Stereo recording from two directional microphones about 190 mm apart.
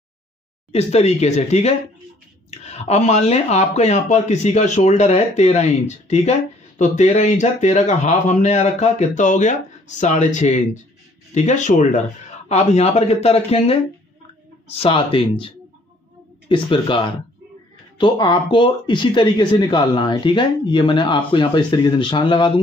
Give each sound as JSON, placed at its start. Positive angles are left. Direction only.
{"t": 0.7, "sound": "speech", "side_deg": 35}
{"t": 16.4, "sound": "speech", "side_deg": 25}